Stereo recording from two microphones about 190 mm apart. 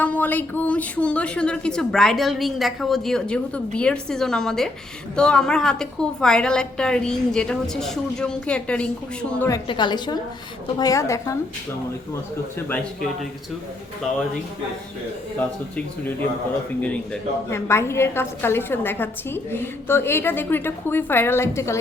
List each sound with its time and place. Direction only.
0.0 s a woman's voice: 10° left (ahead or behind)
9.6 s a woman's voice: 25° left (ahead or behind)
12.5 s a woman's voice: 10° left (ahead or behind)
15.4 s a woman's voice: 10° left (ahead or behind)